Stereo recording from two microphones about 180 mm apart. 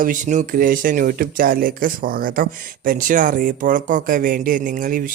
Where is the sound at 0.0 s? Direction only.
45° right (ahead or behind).